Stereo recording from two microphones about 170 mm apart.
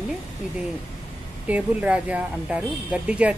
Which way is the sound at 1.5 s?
10° right (ahead or behind).